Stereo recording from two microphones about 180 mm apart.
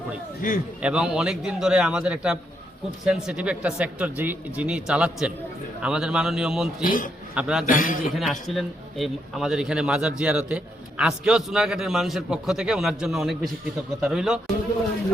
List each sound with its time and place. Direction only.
0.4 s a man's voice: 50° left (ahead or behind)
0.8 s a man's voice: 5° right (ahead or behind)
6.8 s a man's voice: 50° left (ahead or behind)
7.3 s a man's voice: 5° right (ahead or behind)
7.7 s a man's voice: 50° left (ahead or behind)
8.1 s a man's voice: centre (ahead or behind)